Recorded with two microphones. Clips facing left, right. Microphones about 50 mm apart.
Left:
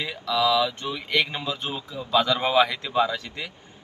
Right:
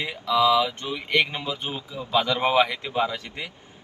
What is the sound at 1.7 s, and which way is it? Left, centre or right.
Speech, centre.